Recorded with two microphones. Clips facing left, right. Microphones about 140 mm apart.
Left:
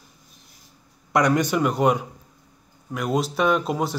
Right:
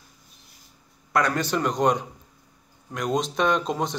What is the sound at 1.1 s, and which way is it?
A man's voice, 15° left (ahead or behind).